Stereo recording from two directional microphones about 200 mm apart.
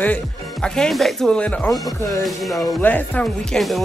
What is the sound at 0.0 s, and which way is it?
Speech, 5° left (ahead or behind).